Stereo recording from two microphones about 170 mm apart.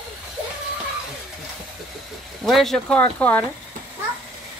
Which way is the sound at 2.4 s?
Centre (ahead or behind).